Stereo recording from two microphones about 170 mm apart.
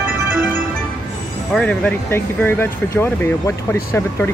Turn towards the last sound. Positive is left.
turn(degrees=15)  # may be behind; listen again after turning